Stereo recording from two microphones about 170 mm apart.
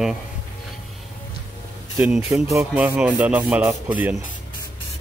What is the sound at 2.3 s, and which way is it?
Speech, 20° right (ahead or behind).